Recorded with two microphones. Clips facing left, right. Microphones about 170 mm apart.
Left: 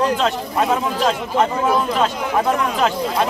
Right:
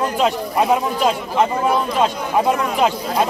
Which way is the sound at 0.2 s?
15° right (ahead or behind).